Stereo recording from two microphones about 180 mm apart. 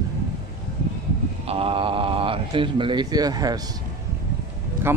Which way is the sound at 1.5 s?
30° right (ahead or behind).